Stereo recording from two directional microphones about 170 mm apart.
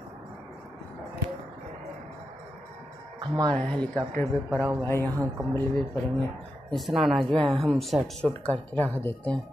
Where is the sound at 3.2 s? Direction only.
25° right (ahead or behind).